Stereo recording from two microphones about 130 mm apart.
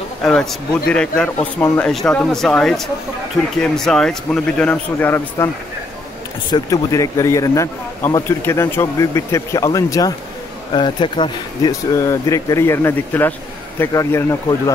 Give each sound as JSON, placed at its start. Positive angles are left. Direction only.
{"t": 0.2, "sound": "a man's voice", "side_deg": 5}
{"t": 6.5, "sound": "speech", "side_deg": 25}
{"t": 10.7, "sound": "speech", "side_deg": 35}
{"t": 11.9, "sound": "speech", "side_deg": 25}